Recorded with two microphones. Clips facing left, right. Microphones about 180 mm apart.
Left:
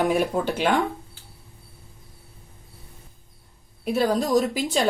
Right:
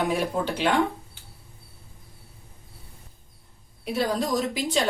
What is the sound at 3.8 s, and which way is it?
Speech, 45° left (ahead or behind).